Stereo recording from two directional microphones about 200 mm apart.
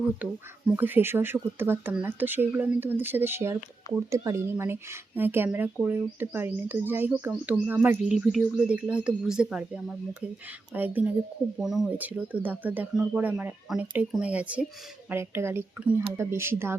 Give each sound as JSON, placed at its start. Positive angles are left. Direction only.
{"t": 0.2, "sound": "speech", "side_deg": -10}